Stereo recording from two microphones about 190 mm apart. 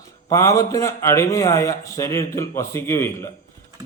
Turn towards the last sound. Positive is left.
turn(degrees=15)  # may be behind; listen again after turning